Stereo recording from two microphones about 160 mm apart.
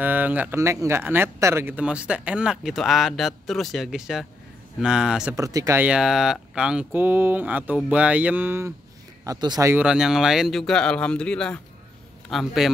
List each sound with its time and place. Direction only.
0.0 s speech: 10° right (ahead or behind)
5.3 s speech: 20° right (ahead or behind)
9.8 s speech: 5° right (ahead or behind)